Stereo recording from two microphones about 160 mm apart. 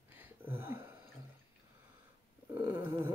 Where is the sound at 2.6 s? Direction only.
20° right (ahead or behind).